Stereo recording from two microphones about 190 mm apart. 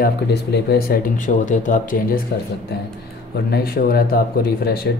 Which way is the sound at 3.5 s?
50° left (ahead or behind).